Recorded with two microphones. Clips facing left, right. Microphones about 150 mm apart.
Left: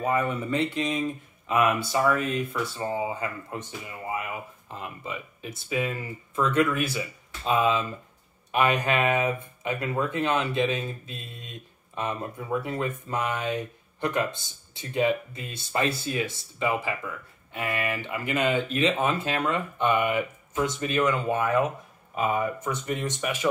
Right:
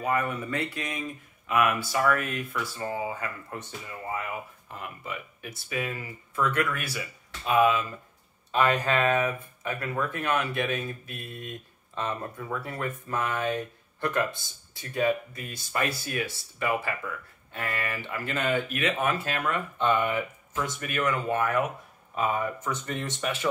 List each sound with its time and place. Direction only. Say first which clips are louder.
0.0 s speech: left 2 dB; 20° left (ahead or behind)